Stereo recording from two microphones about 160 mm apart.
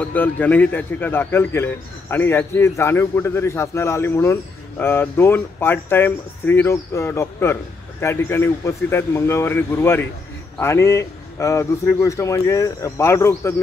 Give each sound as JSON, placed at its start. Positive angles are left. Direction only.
{"t": 0.0, "sound": "a man's voice", "side_deg": 10}